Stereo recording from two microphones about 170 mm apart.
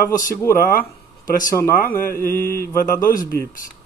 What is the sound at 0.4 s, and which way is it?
A man's voice, 15° left (ahead or behind).